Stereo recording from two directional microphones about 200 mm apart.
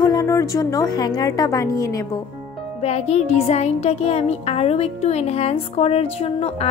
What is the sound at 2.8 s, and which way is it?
Music, 30° left (ahead or behind).